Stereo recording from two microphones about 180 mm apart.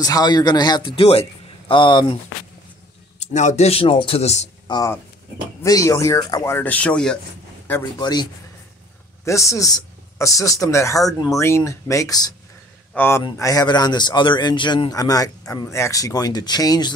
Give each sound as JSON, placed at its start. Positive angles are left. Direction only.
{"t": 0.0, "sound": "a man's voice", "side_deg": 20}
{"t": 3.2, "sound": "a man's voice", "side_deg": 40}
{"t": 4.6, "sound": "a man's voice", "side_deg": 20}
{"t": 8.0, "sound": "a man's voice", "side_deg": 25}